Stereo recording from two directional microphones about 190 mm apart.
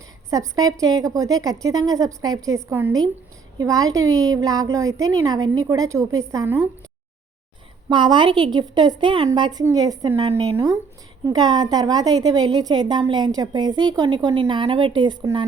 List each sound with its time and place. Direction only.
0.3 s a woman's voice: 20° right (ahead or behind)
7.9 s a woman's voice: 25° right (ahead or behind)